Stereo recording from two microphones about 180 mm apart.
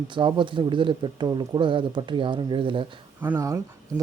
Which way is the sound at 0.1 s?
25° right (ahead or behind).